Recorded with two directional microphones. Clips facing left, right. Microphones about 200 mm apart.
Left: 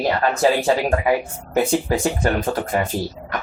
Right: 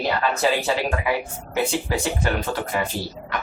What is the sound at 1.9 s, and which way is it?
Speech, 45° left (ahead or behind).